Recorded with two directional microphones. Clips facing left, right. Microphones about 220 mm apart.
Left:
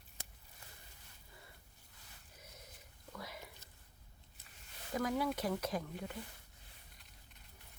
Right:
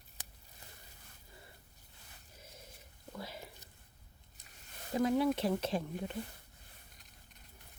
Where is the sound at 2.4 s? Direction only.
30° right (ahead or behind).